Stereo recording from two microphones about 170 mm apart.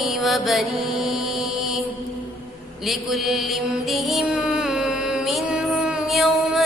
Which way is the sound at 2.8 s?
Centre (ahead or behind).